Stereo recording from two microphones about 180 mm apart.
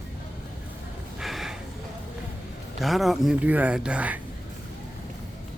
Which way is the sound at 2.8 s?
Centre (ahead or behind).